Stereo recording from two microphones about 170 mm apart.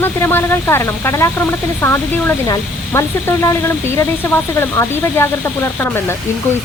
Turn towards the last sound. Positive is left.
turn(degrees=15)  # may be behind; listen again after turning